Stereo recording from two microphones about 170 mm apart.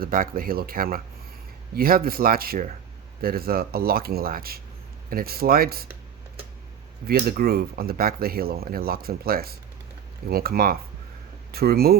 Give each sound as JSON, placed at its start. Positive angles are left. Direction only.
{"t": 0.0, "sound": "speech", "side_deg": -60}
{"t": 7.1, "sound": "speech", "side_deg": -65}